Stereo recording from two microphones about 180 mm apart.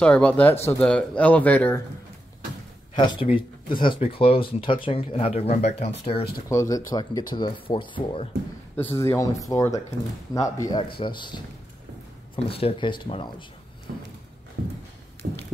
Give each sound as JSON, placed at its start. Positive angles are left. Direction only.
{"t": 0.0, "sound": "speech", "side_deg": 5}
{"t": 3.0, "sound": "speech", "side_deg": 25}
{"t": 6.5, "sound": "speech", "side_deg": 20}
{"t": 8.9, "sound": "speech", "side_deg": 15}
{"t": 12.4, "sound": "speech", "side_deg": 30}
{"t": 15.2, "sound": "speech", "side_deg": -65}